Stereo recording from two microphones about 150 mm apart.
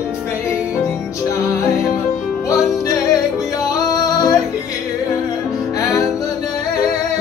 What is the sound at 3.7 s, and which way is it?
Music, 25° left (ahead or behind).